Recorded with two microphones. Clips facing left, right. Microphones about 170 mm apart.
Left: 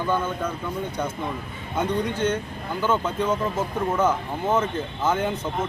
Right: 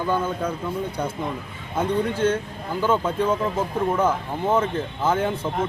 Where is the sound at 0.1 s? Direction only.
10° right (ahead or behind).